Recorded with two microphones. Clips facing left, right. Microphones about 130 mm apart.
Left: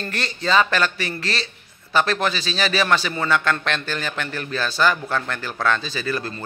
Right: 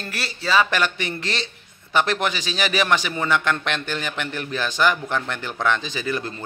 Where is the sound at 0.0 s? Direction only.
5° right (ahead or behind).